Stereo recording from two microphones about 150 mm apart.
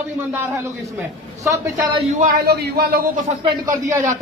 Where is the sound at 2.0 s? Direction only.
65° right (ahead or behind); by 3.3 s 90° right.